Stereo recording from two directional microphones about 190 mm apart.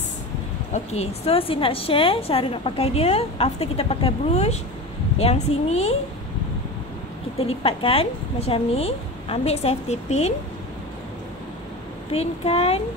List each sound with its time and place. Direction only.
0.7 s a woman's voice: 35° left (ahead or behind)
7.3 s a woman's voice: 30° left (ahead or behind)
12.1 s a woman's voice: 30° left (ahead or behind)